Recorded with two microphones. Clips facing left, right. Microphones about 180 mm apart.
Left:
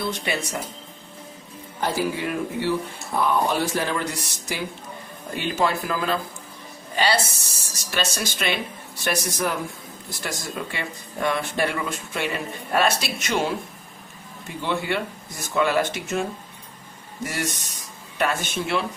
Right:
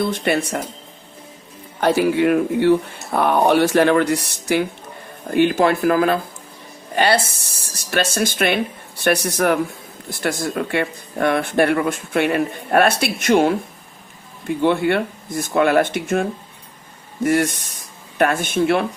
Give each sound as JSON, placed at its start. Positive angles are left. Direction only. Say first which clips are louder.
{"t": 0.1, "sound": "speech", "louder": "right 7 dB", "side_deg": -55}
{"t": 1.8, "sound": "speech", "louder": "right 9 dB", "side_deg": -70}
{"t": 14.6, "sound": "speech", "louder": "right 8 dB", "side_deg": -55}
{"t": 17.2, "sound": "speech", "louder": "right 12 dB", "side_deg": -55}